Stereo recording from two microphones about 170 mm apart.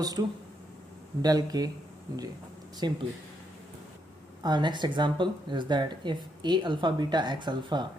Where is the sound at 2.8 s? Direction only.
25° right (ahead or behind).